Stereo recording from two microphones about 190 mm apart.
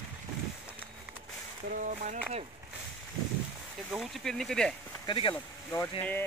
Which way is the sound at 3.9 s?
Centre (ahead or behind).